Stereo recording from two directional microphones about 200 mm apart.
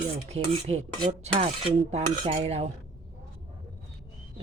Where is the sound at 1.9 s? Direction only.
30° right (ahead or behind).